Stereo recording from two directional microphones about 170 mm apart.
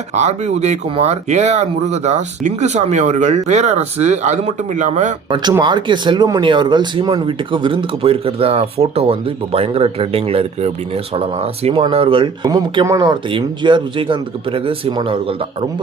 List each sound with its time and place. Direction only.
0.1 s speech: 40° right (ahead or behind)
5.3 s speech: 25° right (ahead or behind)